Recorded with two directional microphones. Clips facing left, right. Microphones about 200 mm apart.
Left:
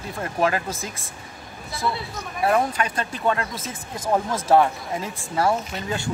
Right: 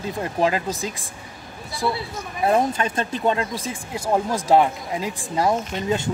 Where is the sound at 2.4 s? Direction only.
25° right (ahead or behind).